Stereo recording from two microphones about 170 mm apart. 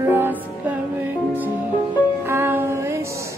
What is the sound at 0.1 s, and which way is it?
Music, 10° right (ahead or behind).